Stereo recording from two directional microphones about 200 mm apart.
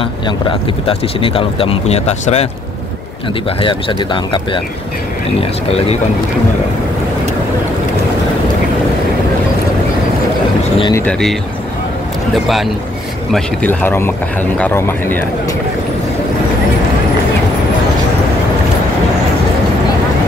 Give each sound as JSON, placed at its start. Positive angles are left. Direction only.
{"t": 0.0, "sound": "speech", "side_deg": 25}
{"t": 3.4, "sound": "speech", "side_deg": 25}
{"t": 10.8, "sound": "speech", "side_deg": 15}
{"t": 11.1, "sound": "speech", "side_deg": 5}
{"t": 13.3, "sound": "speech", "side_deg": 5}